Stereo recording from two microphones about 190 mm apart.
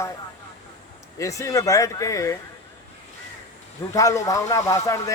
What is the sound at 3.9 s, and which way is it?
A man's voice, 15° left (ahead or behind).